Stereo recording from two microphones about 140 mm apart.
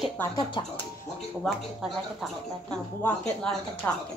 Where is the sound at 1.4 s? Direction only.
Centre (ahead or behind); by 4.0 s 15° left (ahead or behind).